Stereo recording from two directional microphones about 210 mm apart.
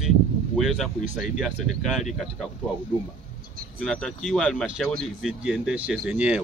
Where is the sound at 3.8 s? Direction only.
Centre (ahead or behind).